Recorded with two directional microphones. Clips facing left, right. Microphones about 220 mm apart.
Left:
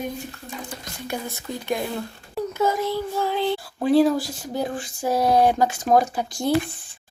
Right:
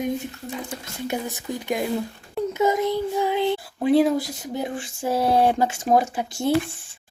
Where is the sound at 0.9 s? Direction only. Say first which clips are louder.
Right 3 dB; 20° right (ahead or behind).